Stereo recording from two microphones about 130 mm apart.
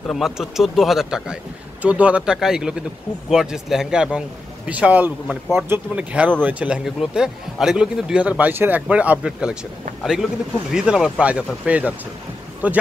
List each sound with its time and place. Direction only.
0.0 s a man's voice: centre (ahead or behind)
10.7 s a man's voice: 5° right (ahead or behind)